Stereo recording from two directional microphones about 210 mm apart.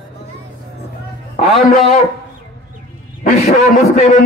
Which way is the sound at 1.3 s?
40° left (ahead or behind).